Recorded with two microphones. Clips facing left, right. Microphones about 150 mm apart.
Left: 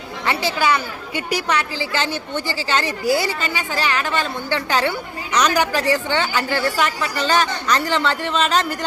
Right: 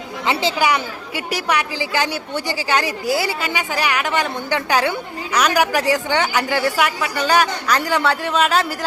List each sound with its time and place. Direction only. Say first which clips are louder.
0.3 s a woman's voice: right 1 dB; 20° right (ahead or behind)
1.1 s a woman's voice: left 2 dB; centre (ahead or behind)
1.5 s a woman's voice: right 1 dB; 15° right (ahead or behind)